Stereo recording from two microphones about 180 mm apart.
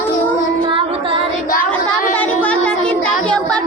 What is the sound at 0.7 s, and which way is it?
Music, 30° right (ahead or behind).